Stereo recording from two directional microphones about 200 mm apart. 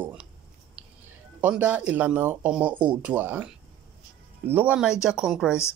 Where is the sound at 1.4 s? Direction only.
10° right (ahead or behind).